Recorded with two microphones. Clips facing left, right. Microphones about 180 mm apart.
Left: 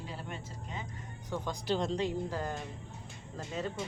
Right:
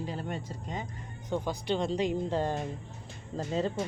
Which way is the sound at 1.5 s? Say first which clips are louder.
Even; centre (ahead or behind).